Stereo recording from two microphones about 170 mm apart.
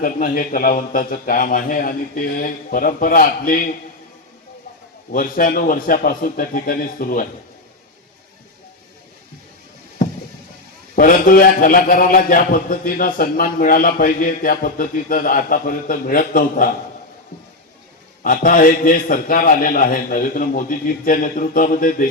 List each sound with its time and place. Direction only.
0.0 s a man's voice: 55° left (ahead or behind)
5.1 s a man's voice: 55° left (ahead or behind)
10.9 s a man's voice: 55° left (ahead or behind)
18.2 s a man's voice: 55° left (ahead or behind)